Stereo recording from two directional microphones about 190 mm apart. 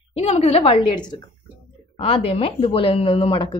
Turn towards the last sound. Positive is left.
turn(degrees=25)  # may be behind; listen again after turning